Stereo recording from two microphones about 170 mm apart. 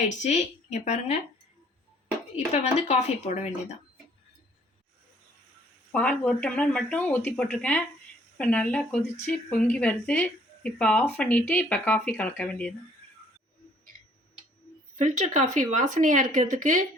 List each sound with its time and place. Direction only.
0.1 s speech: 45° left (ahead or behind)
2.3 s speech: 40° left (ahead or behind)
5.9 s speech: 5° left (ahead or behind)
14.9 s speech: 45° right (ahead or behind)